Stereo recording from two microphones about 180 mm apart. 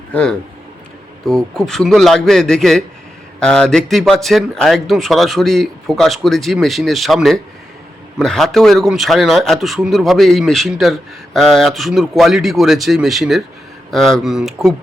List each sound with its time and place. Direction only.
0.1 s speech: 5° left (ahead or behind)